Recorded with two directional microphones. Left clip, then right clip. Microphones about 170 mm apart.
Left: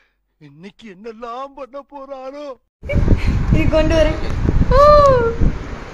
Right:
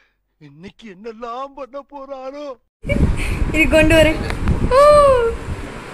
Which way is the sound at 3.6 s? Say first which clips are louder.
Right 4 dB; 20° right (ahead or behind).